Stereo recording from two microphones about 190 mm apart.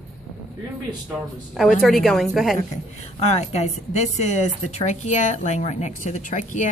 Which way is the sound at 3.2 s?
35° left (ahead or behind).